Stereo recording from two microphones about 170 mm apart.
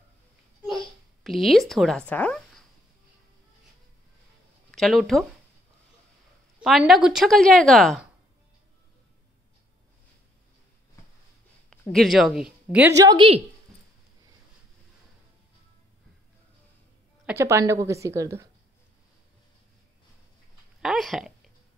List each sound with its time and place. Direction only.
1.2 s a woman's voice: centre (ahead or behind)
4.6 s speech: centre (ahead or behind)
6.6 s a woman's voice: centre (ahead or behind)
11.7 s speech: centre (ahead or behind)
12.9 s a woman's voice: 20° right (ahead or behind)
17.3 s a woman's voice: 15° right (ahead or behind)
20.8 s a woman's voice: centre (ahead or behind)